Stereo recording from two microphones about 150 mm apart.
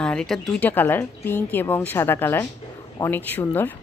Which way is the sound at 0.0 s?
5° left (ahead or behind).